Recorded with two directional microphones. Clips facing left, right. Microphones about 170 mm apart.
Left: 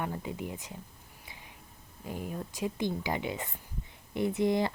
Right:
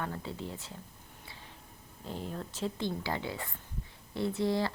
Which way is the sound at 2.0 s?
10° left (ahead or behind).